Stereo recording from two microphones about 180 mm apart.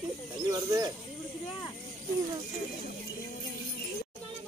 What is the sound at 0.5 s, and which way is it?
Bird, 20° right (ahead or behind).